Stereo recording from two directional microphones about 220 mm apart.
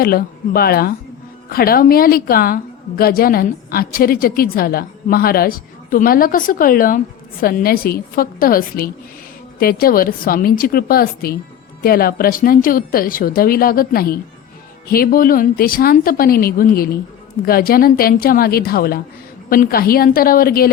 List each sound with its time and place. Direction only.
0.0 s a woman's voice: 40° left (ahead or behind)